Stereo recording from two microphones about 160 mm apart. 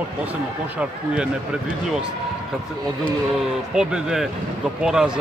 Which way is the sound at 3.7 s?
5° right (ahead or behind).